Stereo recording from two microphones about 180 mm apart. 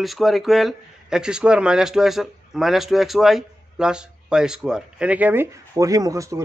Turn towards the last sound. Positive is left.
turn(degrees=-15)  # may be behind; listen again after turning